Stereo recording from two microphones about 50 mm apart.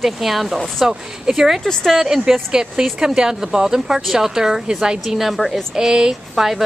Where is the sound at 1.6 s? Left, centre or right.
Centre.